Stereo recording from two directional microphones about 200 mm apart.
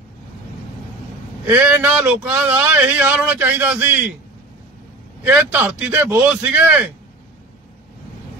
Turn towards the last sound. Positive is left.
turn(degrees=-10)  # may be behind; listen again after turning